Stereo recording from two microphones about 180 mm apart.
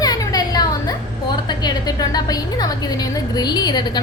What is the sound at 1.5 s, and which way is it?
A woman's voice, 20° left (ahead or behind).